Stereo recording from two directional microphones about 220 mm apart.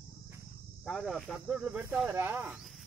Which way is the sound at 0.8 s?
Centre (ahead or behind).